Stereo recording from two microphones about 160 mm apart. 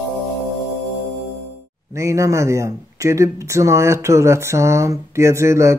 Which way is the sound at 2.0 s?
20° right (ahead or behind).